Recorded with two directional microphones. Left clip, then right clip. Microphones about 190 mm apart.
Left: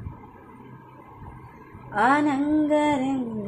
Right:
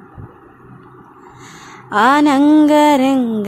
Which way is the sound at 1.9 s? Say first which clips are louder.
Right 10 dB; 40° right (ahead or behind).